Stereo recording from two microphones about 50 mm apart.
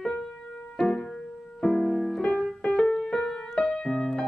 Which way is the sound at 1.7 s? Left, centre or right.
Centre.